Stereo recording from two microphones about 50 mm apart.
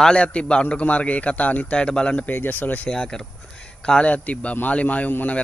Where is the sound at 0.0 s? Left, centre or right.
Left.